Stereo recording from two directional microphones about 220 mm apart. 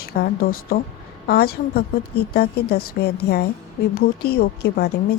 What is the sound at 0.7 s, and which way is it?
A woman's voice, 45° left (ahead or behind).